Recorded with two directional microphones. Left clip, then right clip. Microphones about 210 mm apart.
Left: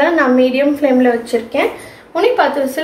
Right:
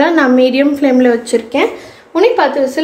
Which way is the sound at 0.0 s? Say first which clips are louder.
Right 2 dB; 55° right (ahead or behind).